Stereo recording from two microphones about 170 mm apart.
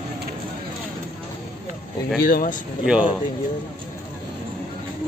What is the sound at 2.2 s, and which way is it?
Speech, 60° left (ahead or behind).